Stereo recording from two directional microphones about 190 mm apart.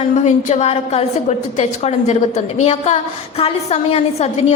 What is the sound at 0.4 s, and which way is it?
A woman's voice, 35° left (ahead or behind).